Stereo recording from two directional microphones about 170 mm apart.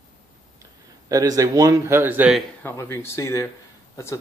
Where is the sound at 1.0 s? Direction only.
20° right (ahead or behind).